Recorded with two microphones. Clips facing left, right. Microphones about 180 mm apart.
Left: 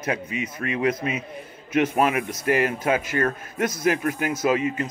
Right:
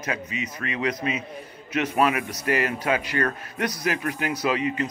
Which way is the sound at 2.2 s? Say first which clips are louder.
Left 3 dB; 50° left (ahead or behind).